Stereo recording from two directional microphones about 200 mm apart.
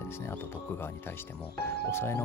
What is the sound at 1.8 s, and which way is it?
Speech, 10° left (ahead or behind).